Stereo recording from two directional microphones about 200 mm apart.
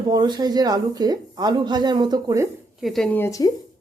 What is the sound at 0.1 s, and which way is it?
Speech, 20° right (ahead or behind).